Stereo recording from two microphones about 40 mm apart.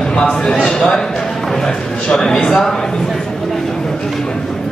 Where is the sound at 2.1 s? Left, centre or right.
Centre.